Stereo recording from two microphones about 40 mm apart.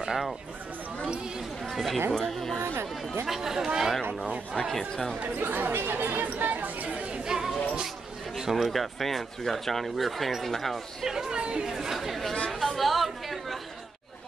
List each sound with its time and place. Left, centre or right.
0.0 s speech: centre
1.7 s speech: centre
2.6 s speech: right
3.3 s speech: centre
4.7 s speech: centre
5.4 s speech: right
5.8 s speech: right
6.0 s chatter: right
7.2 s a sound: centre
8.4 s speech: centre
11.1 s speech: centre
11.7 s chatter: centre